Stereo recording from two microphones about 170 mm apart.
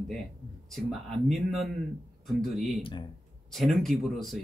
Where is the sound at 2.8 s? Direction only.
30° left (ahead or behind).